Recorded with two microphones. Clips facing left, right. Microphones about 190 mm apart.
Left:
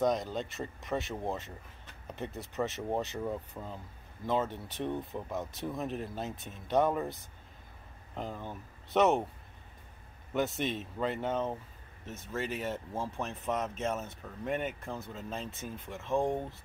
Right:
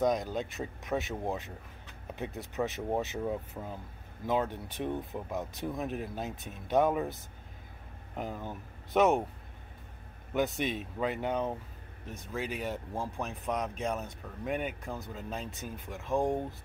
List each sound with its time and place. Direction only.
0.0 s speech: centre (ahead or behind)
8.2 s speech: 5° right (ahead or behind)
10.3 s speech: centre (ahead or behind)